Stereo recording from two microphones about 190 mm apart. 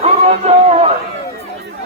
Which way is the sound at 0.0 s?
35° right (ahead or behind).